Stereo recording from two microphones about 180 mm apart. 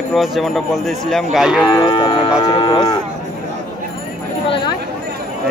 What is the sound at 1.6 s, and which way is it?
Speech, 25° left (ahead or behind).